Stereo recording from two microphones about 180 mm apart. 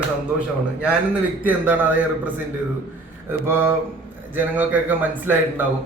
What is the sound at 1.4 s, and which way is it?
Speech, 10° right (ahead or behind).